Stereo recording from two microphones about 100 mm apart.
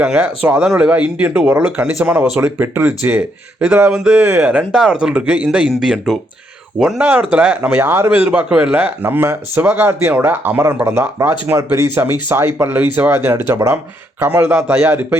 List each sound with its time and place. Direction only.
0.0 s speech: 10° right (ahead or behind)
8.1 s speech: 10° right (ahead or behind)
11.5 s speech: 30° right (ahead or behind)
12.5 s speech: 20° right (ahead or behind)
14.3 s speech: 15° right (ahead or behind)